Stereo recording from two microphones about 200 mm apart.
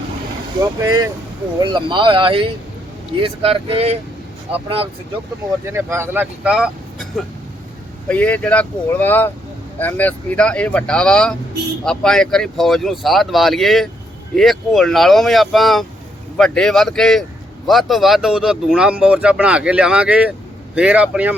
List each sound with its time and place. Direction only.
0.6 s speech: 20° right (ahead or behind)
5.6 s speech: 15° right (ahead or behind)
8.0 s speech: 5° left (ahead or behind)